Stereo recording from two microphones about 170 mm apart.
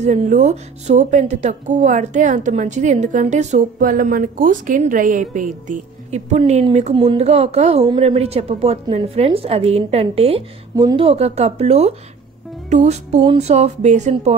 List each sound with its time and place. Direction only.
0.0 s a woman's voice: 45° right (ahead or behind)
10.8 s speech: 25° right (ahead or behind)
11.1 s a woman's voice: 40° right (ahead or behind)